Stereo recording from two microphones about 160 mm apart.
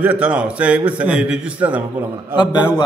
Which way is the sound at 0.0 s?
10° right (ahead or behind).